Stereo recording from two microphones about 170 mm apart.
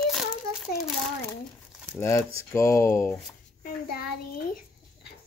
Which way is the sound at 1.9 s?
15° left (ahead or behind).